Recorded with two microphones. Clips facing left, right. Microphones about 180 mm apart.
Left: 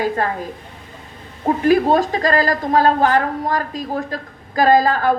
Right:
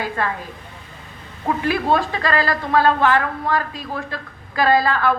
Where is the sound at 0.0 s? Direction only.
40° left (ahead or behind).